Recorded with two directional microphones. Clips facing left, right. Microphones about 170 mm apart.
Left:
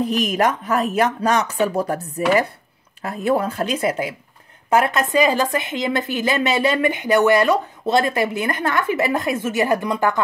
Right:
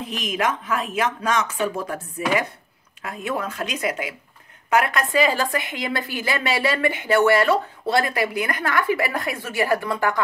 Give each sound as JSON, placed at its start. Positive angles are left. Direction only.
{"t": 0.0, "sound": "speech", "side_deg": 40}